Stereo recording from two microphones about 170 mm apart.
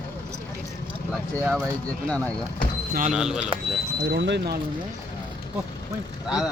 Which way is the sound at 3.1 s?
5° right (ahead or behind).